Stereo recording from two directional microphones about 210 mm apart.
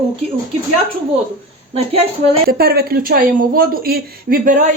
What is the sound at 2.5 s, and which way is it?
Speech, 45° right (ahead or behind).